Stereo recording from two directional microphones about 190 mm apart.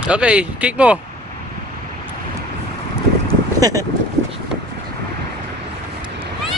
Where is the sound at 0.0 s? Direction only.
5° right (ahead or behind).